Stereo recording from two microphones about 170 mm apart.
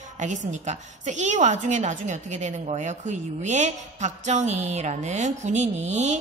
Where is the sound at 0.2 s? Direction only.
45° right (ahead or behind).